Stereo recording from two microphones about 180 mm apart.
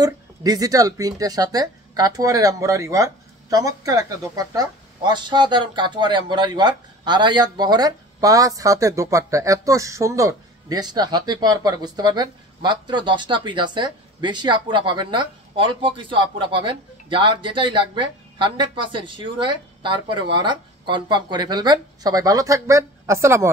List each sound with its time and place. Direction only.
0.0 s speech: 20° right (ahead or behind)